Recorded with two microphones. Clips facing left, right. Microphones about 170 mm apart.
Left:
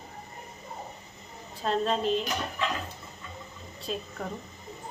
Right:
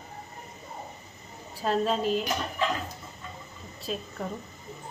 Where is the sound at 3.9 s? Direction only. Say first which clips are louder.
Even; centre (ahead or behind).